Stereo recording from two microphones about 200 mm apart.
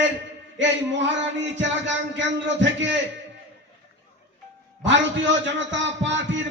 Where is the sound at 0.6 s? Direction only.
65° right (ahead or behind).